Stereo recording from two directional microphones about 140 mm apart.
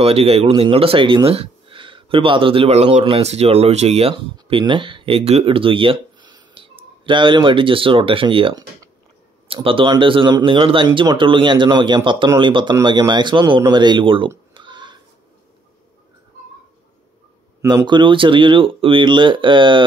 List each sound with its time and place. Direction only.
0.0 s speech: 45° right (ahead or behind)
14.5 s pig: 35° right (ahead or behind)
17.8 s speech: 35° right (ahead or behind)